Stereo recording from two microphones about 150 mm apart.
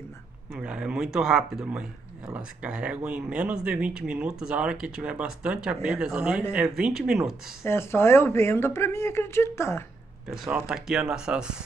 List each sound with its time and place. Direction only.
0.5 s speech: 5° right (ahead or behind)
7.6 s a woman's voice: 15° left (ahead or behind)
10.2 s speech: 5° right (ahead or behind)